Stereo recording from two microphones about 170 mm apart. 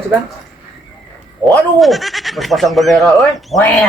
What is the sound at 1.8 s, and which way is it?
Speech, centre (ahead or behind).